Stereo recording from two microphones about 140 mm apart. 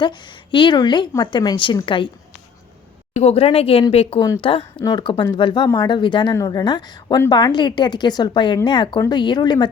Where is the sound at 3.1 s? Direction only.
45° left (ahead or behind).